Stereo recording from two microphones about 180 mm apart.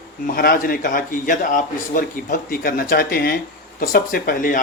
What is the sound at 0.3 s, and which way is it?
A man's voice, 50° left (ahead or behind).